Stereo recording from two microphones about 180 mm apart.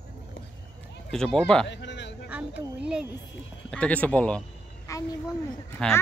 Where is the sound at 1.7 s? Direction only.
75° left (ahead or behind).